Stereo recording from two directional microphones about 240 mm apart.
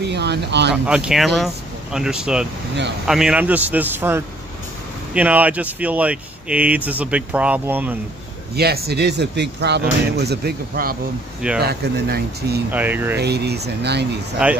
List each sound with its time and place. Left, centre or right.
0.0 s speech: right
0.8 s a man's voice: centre
8.5 s speech: right
12.7 s a man's voice: centre
13.2 s speech: right
14.4 s speech: centre